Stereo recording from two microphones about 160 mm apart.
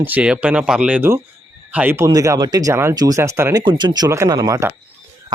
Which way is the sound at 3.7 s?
30° right (ahead or behind).